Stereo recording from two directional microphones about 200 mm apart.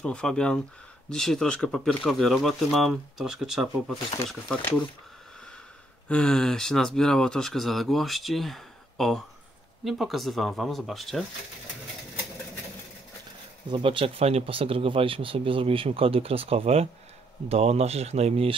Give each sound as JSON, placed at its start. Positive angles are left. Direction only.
{"t": 0.0, "sound": "speech", "side_deg": 5}
{"t": 6.0, "sound": "speech", "side_deg": 5}
{"t": 13.7, "sound": "speech", "side_deg": -25}